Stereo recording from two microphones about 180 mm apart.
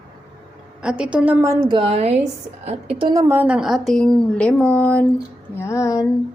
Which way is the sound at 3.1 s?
15° right (ahead or behind).